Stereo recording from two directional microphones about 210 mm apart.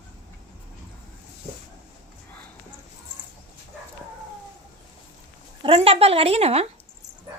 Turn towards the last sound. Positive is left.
turn(degrees=-30)  # may be behind; listen again after turning